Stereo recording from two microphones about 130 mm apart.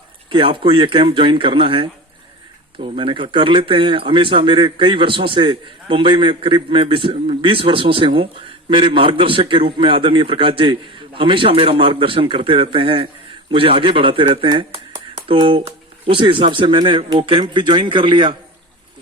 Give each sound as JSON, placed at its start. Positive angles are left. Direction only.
{"t": 0.3, "sound": "speech", "side_deg": -40}